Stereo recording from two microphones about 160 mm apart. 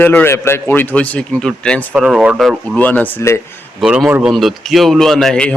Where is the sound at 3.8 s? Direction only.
5° right (ahead or behind).